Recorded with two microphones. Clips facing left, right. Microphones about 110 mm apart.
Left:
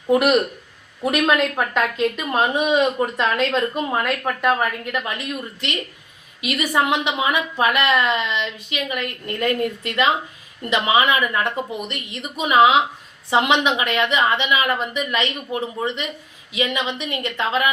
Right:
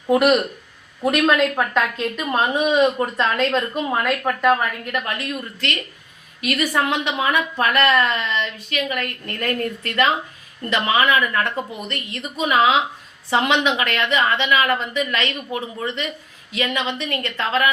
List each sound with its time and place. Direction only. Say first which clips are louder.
0.1 s a woman's voice: even; 10° left (ahead or behind)
5.0 s a woman's voice: right 1 dB; 20° left (ahead or behind)